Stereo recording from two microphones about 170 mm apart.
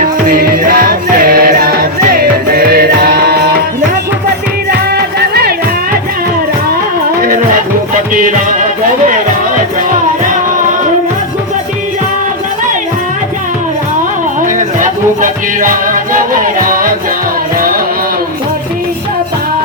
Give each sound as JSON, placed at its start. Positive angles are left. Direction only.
{"t": 0.3, "sound": "music", "side_deg": -60}
{"t": 4.9, "sound": "music", "side_deg": -65}
{"t": 8.1, "sound": "music", "side_deg": -50}
{"t": 14.4, "sound": "music", "side_deg": -50}